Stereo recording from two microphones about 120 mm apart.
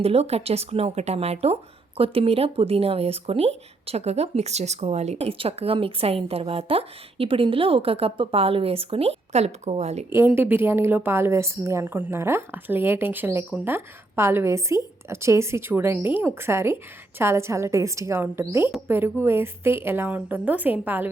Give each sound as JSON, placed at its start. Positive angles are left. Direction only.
{"t": 0.0, "sound": "speech", "side_deg": -60}
{"t": 10.1, "sound": "a woman's voice", "side_deg": -20}